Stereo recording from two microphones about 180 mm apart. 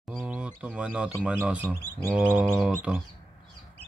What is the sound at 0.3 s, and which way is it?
Speech, 5° right (ahead or behind).